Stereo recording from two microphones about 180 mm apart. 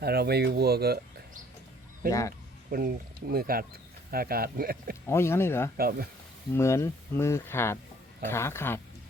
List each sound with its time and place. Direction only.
0.0 s speech: 60° right (ahead or behind)
2.0 s speech: 20° left (ahead or behind)
2.6 s speech: 50° right (ahead or behind)
5.0 s speech: 15° left (ahead or behind)
5.7 s speech: 55° right (ahead or behind)
6.5 s speech: 15° left (ahead or behind)